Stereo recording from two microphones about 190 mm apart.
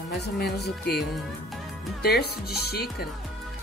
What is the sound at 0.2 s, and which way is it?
Speech, 55° left (ahead or behind).